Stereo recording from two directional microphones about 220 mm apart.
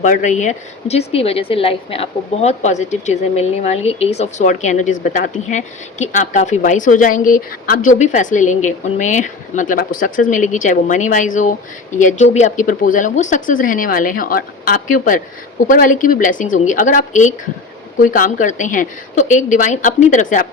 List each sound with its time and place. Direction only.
0.0 s a woman's voice: 35° left (ahead or behind)